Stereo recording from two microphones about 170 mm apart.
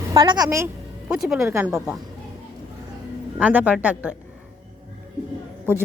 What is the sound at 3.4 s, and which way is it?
Speech, 10° right (ahead or behind).